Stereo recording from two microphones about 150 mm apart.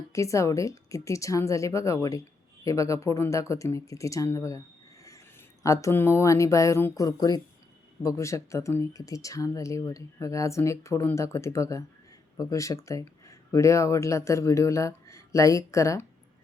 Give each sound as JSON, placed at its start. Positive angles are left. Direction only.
{"t": 0.1, "sound": "speech", "side_deg": 20}
{"t": 5.6, "sound": "speech", "side_deg": 20}